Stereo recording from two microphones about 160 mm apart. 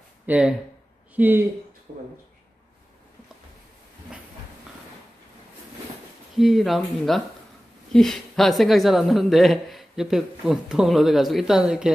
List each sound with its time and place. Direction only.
0.3 s a woman's voice: 5° right (ahead or behind)
6.3 s a woman's voice: centre (ahead or behind)